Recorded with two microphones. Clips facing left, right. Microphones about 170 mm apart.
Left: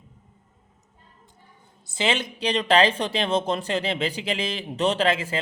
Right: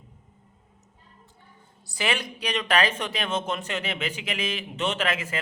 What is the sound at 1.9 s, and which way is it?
A man's voice, 25° left (ahead or behind).